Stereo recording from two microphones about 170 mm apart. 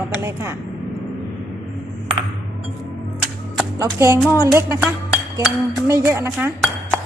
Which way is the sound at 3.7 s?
20° right (ahead or behind).